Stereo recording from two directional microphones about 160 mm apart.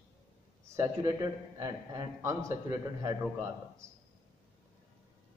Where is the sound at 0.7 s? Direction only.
20° right (ahead or behind).